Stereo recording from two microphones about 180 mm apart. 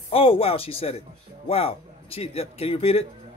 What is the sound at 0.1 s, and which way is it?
A man's voice, 30° left (ahead or behind).